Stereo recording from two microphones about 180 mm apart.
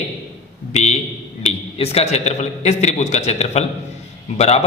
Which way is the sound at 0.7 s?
40° left (ahead or behind).